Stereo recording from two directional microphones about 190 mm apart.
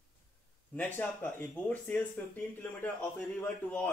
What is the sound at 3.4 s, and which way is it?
Speech, 5° left (ahead or behind).